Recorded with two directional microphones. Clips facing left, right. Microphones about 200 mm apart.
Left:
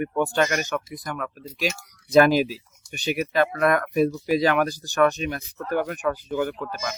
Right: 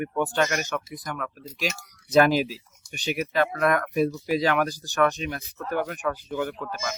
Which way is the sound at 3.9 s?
Centre (ahead or behind).